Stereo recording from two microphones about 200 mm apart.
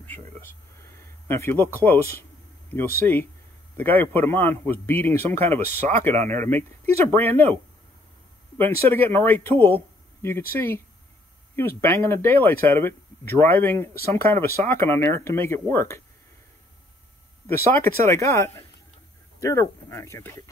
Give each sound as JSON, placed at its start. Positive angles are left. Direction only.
{"t": 0.3, "sound": "a man's voice", "side_deg": 10}
{"t": 8.5, "sound": "a man's voice", "side_deg": 10}
{"t": 11.8, "sound": "a man's voice", "side_deg": 10}
{"t": 17.6, "sound": "a man's voice", "side_deg": 10}